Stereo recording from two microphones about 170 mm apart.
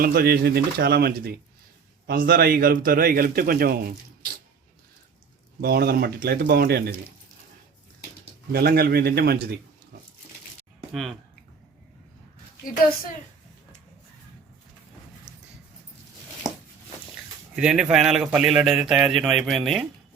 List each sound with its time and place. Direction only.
0.0 s a man's voice: 60° right (ahead or behind)
5.5 s speech: 65° right (ahead or behind)
8.5 s speech: 65° right (ahead or behind)
17.5 s speech: 5° right (ahead or behind)